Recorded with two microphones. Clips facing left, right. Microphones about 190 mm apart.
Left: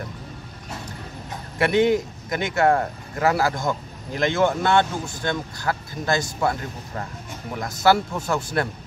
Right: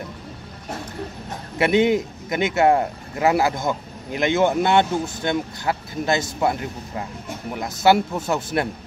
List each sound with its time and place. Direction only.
1.6 s a man's voice: 20° right (ahead or behind)
7.5 s speech: 5° right (ahead or behind)
7.8 s a man's voice: 20° right (ahead or behind)